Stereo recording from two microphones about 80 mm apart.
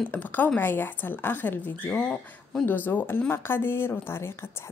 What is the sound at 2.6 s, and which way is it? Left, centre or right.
Speech, left.